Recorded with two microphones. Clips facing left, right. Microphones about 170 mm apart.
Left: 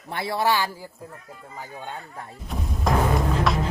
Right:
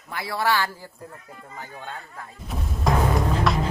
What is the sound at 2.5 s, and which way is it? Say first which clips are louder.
Music: even; centre (ahead or behind).